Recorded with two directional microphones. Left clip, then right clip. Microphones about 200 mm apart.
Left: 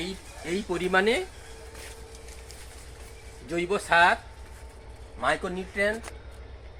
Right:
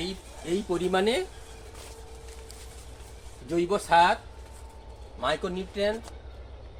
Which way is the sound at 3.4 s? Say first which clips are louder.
Right 1 dB; 60° right (ahead or behind).